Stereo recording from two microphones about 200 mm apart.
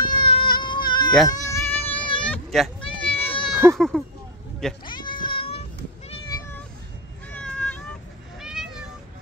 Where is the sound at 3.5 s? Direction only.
10° right (ahead or behind).